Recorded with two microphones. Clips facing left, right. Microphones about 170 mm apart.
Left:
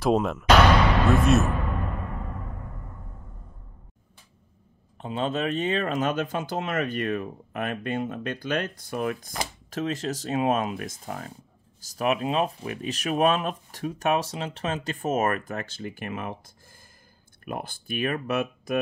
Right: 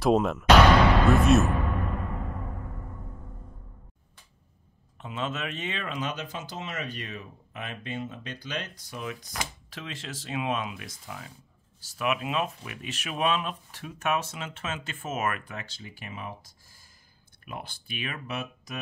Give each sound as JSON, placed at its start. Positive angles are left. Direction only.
{"t": 0.0, "sound": "speech", "side_deg": 0}
{"t": 4.9, "sound": "speech", "side_deg": 35}
{"t": 17.5, "sound": "speech", "side_deg": 50}